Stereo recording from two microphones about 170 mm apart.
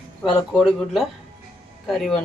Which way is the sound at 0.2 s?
5° left (ahead or behind).